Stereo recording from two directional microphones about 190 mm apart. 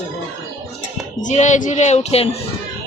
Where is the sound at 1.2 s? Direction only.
40° left (ahead or behind).